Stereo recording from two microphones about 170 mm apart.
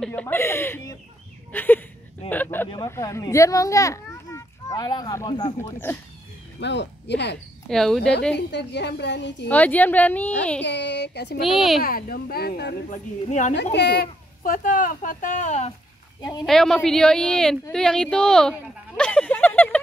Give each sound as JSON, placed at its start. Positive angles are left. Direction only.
{"t": 0.0, "sound": "a child's voice", "side_deg": 10}
{"t": 6.6, "sound": "speech", "side_deg": 90}
{"t": 7.6, "sound": "a woman's voice", "side_deg": 0}
{"t": 8.5, "sound": "a woman's voice", "side_deg": 90}
{"t": 9.5, "sound": "speech", "side_deg": 10}
{"t": 10.6, "sound": "a woman's voice", "side_deg": 90}
{"t": 11.4, "sound": "a woman's voice", "side_deg": 0}
{"t": 11.8, "sound": "speech", "side_deg": 60}
{"t": 12.9, "sound": "speech", "side_deg": 45}
{"t": 13.7, "sound": "speech", "side_deg": 80}
{"t": 16.2, "sound": "a woman's voice", "side_deg": 25}
{"t": 16.4, "sound": "a woman's voice", "side_deg": 0}